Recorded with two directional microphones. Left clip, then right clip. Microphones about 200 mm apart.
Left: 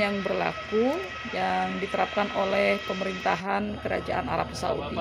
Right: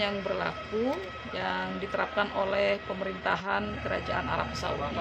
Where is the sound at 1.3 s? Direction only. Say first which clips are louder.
Left 5 dB; 25° left (ahead or behind).